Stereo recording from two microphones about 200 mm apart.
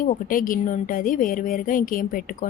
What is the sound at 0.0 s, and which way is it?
A woman's voice, 45° left (ahead or behind).